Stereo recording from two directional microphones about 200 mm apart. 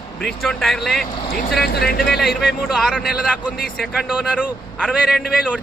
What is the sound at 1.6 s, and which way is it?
Speech, 50° left (ahead or behind).